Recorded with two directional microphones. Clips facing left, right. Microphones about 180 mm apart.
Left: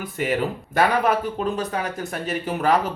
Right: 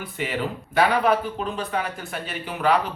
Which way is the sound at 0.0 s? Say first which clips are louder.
Left 4 dB; 45° left (ahead or behind).